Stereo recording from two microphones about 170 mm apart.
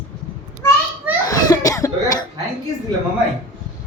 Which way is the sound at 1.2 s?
20° left (ahead or behind).